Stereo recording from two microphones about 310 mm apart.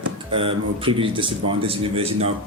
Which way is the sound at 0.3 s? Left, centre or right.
Centre.